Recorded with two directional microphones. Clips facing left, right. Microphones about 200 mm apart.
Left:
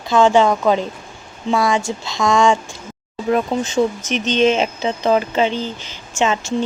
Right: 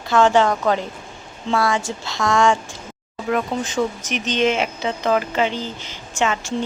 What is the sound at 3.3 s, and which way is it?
Speech, 25° left (ahead or behind).